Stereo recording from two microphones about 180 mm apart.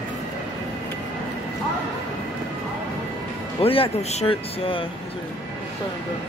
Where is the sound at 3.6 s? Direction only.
30° left (ahead or behind).